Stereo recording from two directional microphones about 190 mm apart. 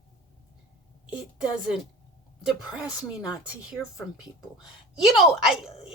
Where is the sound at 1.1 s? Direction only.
5° right (ahead or behind).